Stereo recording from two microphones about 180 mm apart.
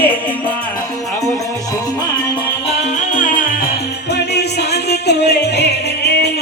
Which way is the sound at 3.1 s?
45° left (ahead or behind).